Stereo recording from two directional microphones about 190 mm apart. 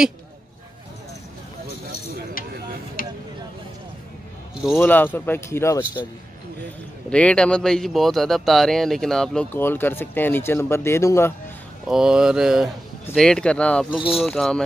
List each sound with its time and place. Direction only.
3.0 s a sound: 50° left (ahead or behind)
4.7 s speech: 10° left (ahead or behind)
7.1 s speech: 5° left (ahead or behind)
11.9 s speech: 5° right (ahead or behind)